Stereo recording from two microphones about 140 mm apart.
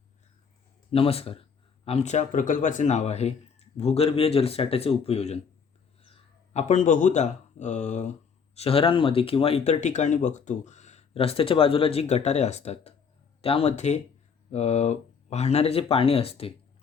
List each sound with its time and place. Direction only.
0.9 s speech: 40° left (ahead or behind); by 8.1 s 55° left (ahead or behind)
8.5 s speech: 45° left (ahead or behind)